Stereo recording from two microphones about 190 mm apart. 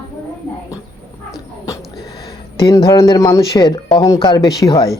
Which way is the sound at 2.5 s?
20° left (ahead or behind).